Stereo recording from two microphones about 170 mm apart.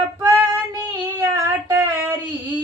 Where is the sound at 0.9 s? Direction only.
15° right (ahead or behind).